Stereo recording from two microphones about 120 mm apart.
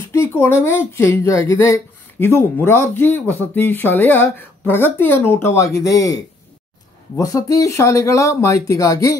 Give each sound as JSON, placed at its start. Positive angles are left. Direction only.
{"t": 0.1, "sound": "speech", "side_deg": 20}